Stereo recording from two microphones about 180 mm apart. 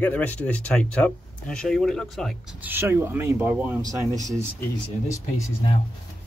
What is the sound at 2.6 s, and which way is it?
Speech, 15° right (ahead or behind).